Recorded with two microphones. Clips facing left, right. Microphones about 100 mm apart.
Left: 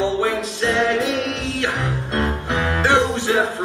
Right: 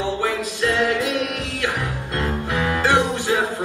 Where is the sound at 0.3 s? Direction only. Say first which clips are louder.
Left 1 dB; 25° left (ahead or behind).